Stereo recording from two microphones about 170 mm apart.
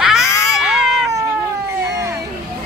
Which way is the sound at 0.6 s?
5° right (ahead or behind).